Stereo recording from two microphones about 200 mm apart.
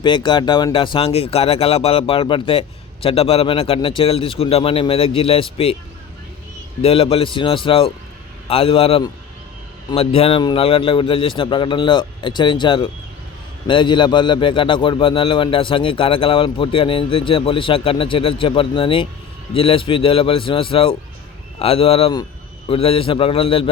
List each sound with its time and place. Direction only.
0.0 s speech: 25° left (ahead or behind)
6.8 s speech: 30° left (ahead or behind)